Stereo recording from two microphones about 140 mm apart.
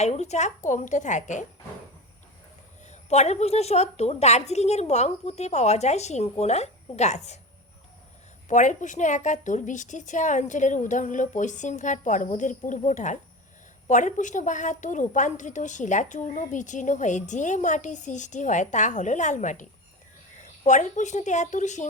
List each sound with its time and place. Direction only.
0.0 s a woman's voice: 55° left (ahead or behind)
2.9 s a woman's voice: 50° left (ahead or behind)
8.4 s a woman's voice: 60° left (ahead or behind)
20.7 s a woman's voice: 60° left (ahead or behind)